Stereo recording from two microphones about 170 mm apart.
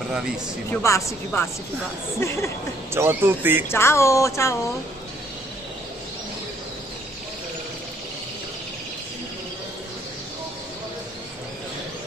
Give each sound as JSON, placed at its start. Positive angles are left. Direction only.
{"t": 0.7, "sound": "speech", "side_deg": 15}
{"t": 2.9, "sound": "speech", "side_deg": -15}
{"t": 3.6, "sound": "speech", "side_deg": 15}